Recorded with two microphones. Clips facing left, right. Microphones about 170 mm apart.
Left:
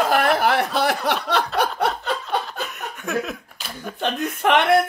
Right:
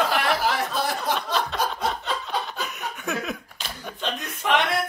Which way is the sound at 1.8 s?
65° left (ahead or behind).